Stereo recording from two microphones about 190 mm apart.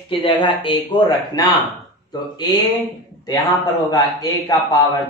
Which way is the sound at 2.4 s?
20° left (ahead or behind).